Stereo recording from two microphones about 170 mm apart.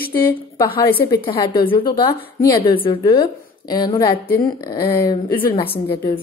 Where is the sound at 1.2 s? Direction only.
25° left (ahead or behind).